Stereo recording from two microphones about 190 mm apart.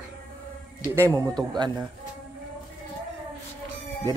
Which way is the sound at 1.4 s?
20° right (ahead or behind).